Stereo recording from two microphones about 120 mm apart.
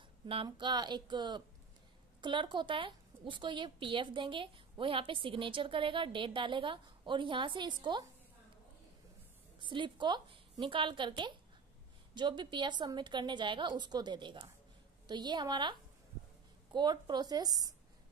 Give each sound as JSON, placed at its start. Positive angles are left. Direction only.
{"t": 0.3, "sound": "a woman's voice", "side_deg": -45}
{"t": 9.6, "sound": "a woman's voice", "side_deg": -45}
{"t": 16.7, "sound": "a woman's voice", "side_deg": -40}